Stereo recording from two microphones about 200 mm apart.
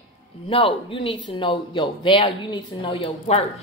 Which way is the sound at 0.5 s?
25° left (ahead or behind).